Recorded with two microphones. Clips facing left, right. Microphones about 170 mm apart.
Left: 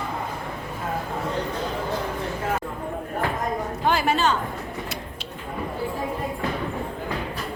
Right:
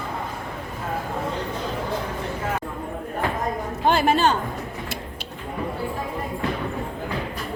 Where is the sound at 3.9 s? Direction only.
50° right (ahead or behind).